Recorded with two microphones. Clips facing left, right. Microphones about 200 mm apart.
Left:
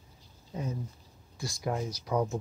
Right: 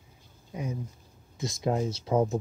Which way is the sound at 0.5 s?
10° right (ahead or behind).